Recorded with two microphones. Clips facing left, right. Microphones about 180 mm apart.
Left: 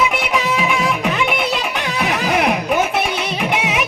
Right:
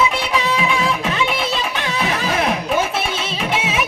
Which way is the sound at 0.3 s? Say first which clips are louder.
Left 1 dB; 20° left (ahead or behind).